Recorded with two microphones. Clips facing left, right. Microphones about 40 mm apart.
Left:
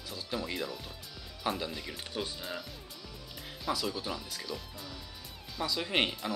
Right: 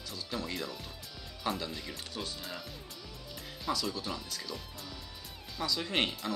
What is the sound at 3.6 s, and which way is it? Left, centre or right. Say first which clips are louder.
Speech: left 1 dB; centre.